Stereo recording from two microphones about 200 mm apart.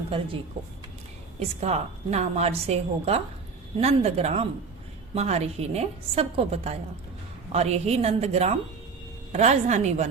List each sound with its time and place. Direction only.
0.6 s a woman's voice: 35° right (ahead or behind)